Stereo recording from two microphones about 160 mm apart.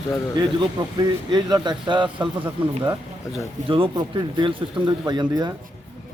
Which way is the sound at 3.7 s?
30° right (ahead or behind).